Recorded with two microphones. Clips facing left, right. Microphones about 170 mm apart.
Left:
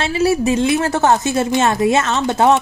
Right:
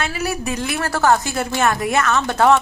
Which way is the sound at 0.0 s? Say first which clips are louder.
Left 8 dB; 25° left (ahead or behind).